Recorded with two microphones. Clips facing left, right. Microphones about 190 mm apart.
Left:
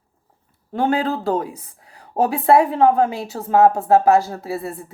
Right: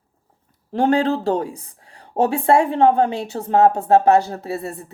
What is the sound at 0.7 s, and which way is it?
Speech, 30° right (ahead or behind).